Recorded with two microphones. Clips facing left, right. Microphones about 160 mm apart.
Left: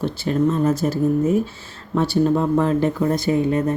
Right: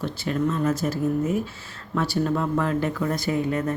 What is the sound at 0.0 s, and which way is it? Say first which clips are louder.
Speech: left 5 dB; 30° left (ahead or behind).